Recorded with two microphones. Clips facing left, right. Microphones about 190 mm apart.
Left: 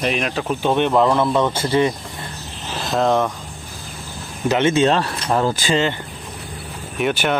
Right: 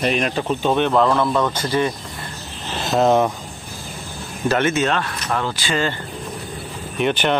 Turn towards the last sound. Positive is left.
turn(degrees=5)  # may be behind; listen again after turning